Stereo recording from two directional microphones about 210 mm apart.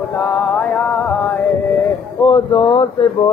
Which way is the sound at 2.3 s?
25° left (ahead or behind).